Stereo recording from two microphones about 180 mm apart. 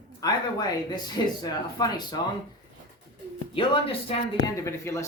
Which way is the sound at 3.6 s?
30° left (ahead or behind).